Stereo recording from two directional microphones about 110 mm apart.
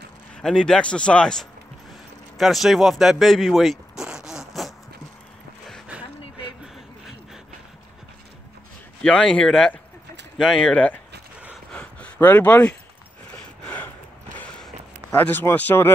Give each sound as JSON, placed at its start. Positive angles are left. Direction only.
{"t": 0.4, "sound": "speech", "side_deg": 5}
{"t": 2.3, "sound": "zipper", "side_deg": 0}
{"t": 9.0, "sound": "speech", "side_deg": 10}
{"t": 11.7, "sound": "a sound", "side_deg": 10}
{"t": 15.1, "sound": "speech", "side_deg": 20}